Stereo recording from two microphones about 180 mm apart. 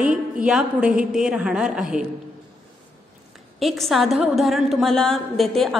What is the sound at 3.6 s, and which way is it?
A woman's voice, centre (ahead or behind).